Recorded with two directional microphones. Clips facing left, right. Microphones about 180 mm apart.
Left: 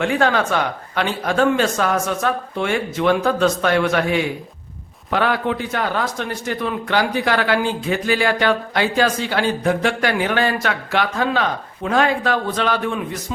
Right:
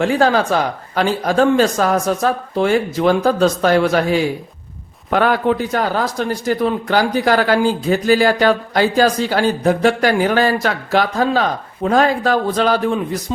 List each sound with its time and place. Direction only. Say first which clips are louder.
0.0 s a man's voice: right 3 dB; 35° right (ahead or behind)